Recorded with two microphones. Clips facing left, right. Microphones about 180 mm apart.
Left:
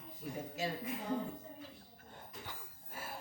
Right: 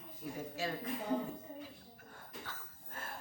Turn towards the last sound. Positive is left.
turn(degrees=10)  # may be behind; listen again after turning